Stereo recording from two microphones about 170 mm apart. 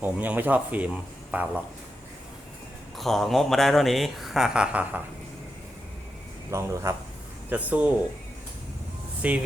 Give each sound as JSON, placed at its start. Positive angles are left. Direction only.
{"t": 0.0, "sound": "speech", "side_deg": -10}
{"t": 3.0, "sound": "speech", "side_deg": 0}
{"t": 6.5, "sound": "speech", "side_deg": -15}
{"t": 9.2, "sound": "speech", "side_deg": -10}